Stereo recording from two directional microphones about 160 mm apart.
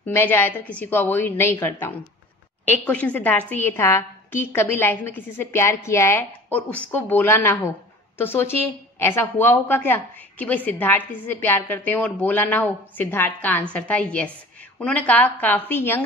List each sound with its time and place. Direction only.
0.0 s a woman's voice: 10° left (ahead or behind)